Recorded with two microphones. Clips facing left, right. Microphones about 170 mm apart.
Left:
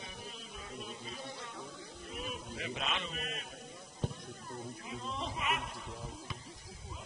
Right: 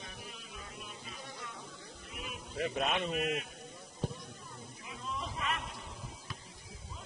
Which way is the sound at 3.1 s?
35° left (ahead or behind).